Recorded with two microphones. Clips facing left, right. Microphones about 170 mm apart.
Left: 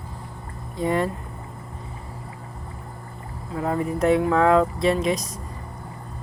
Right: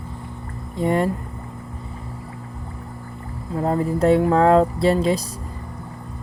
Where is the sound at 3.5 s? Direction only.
30° right (ahead or behind).